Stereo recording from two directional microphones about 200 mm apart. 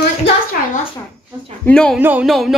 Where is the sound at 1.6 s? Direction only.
5° left (ahead or behind).